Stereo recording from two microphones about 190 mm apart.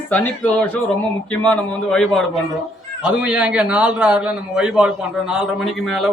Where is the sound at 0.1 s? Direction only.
5° left (ahead or behind).